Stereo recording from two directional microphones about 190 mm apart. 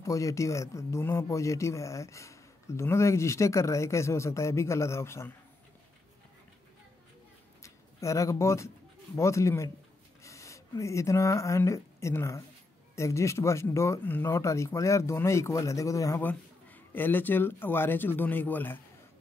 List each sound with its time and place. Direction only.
0.0 s speech: 15° left (ahead or behind)
7.6 s speech: 15° left (ahead or behind)